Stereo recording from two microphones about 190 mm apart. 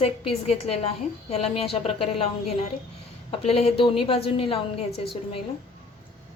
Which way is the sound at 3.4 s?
35° left (ahead or behind).